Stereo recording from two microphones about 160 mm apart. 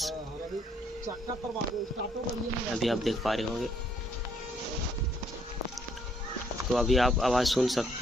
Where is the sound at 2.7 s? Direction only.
Centre (ahead or behind).